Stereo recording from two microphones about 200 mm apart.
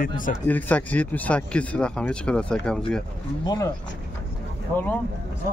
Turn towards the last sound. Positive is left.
turn(degrees=10)  # may be behind; listen again after turning